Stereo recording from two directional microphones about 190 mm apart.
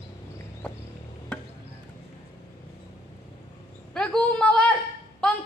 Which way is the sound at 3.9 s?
5° left (ahead or behind).